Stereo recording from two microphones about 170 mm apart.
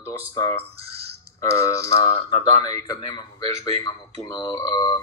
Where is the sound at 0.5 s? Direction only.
35° right (ahead or behind).